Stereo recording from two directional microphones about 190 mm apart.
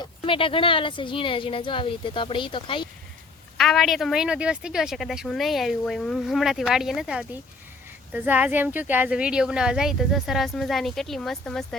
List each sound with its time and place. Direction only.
0.0 s speech: 30° left (ahead or behind)
3.6 s speech: centre (ahead or behind)